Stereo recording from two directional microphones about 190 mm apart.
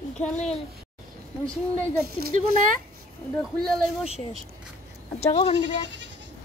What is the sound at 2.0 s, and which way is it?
Speech, 55° right (ahead or behind).